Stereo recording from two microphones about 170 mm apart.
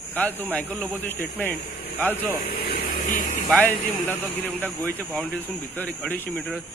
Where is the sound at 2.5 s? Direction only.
75° left (ahead or behind).